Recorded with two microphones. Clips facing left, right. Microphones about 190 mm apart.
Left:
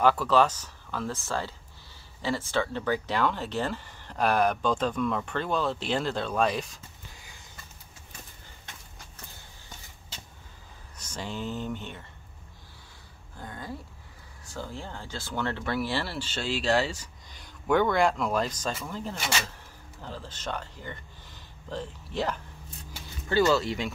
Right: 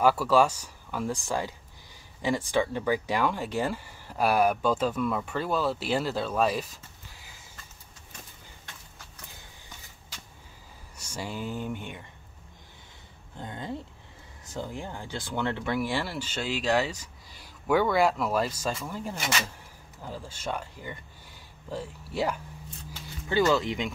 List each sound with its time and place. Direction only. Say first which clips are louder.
0.0 s speech: right 1 dB; 10° right (ahead or behind)
11.0 s speech: even; 10° right (ahead or behind)
13.4 s speech: right 3 dB; 20° right (ahead or behind)